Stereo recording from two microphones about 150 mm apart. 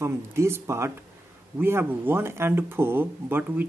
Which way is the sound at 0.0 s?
20° right (ahead or behind).